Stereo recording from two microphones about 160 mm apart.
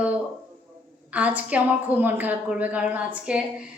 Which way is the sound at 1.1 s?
10° right (ahead or behind).